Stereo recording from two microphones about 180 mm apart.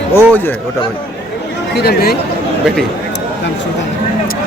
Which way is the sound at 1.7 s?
60° left (ahead or behind).